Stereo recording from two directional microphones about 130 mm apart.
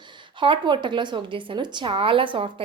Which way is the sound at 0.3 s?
40° right (ahead or behind).